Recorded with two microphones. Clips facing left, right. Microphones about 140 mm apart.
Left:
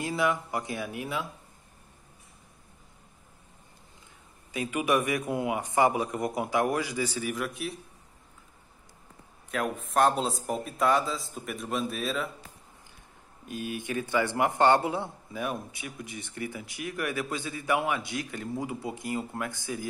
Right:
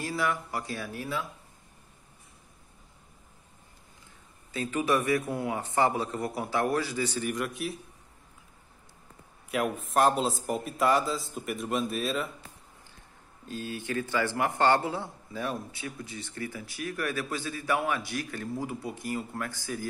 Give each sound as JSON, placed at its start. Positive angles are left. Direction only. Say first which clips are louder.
{"t": 0.0, "sound": "a man's voice", "louder": "left 2 dB", "side_deg": 20}
{"t": 4.5, "sound": "a man's voice", "louder": "even", "side_deg": 10}
{"t": 9.5, "sound": "a man's voice", "louder": "right 1 dB", "side_deg": -5}
{"t": 13.5, "sound": "a man's voice", "louder": "left 1 dB", "side_deg": 15}